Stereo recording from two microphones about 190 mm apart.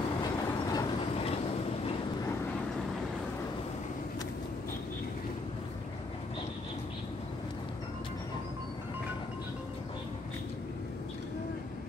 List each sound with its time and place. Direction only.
0.2 s train: 20° left (ahead or behind)